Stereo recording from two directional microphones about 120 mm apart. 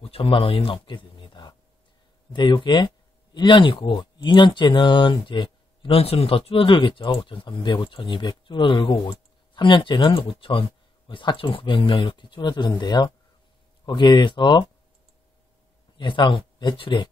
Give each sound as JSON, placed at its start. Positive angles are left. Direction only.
{"t": 0.0, "sound": "a sound", "side_deg": 50}
{"t": 2.3, "sound": "speech", "side_deg": 40}
{"t": 16.0, "sound": "speech", "side_deg": 40}